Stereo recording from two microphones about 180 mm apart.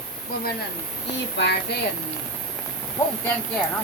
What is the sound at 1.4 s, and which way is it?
Speech, 75° left (ahead or behind).